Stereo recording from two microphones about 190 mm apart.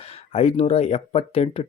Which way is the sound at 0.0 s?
30° left (ahead or behind).